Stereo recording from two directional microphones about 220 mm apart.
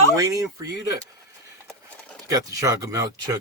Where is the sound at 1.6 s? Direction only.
5° left (ahead or behind).